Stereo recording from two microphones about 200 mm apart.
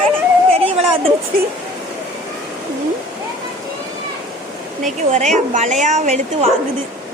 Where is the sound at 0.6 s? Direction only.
30° right (ahead or behind).